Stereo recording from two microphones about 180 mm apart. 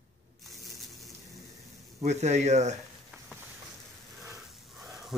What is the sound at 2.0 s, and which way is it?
Speech, 40° right (ahead or behind).